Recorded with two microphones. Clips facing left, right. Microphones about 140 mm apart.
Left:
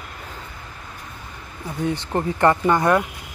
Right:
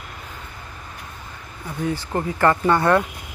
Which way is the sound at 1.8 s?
20° left (ahead or behind).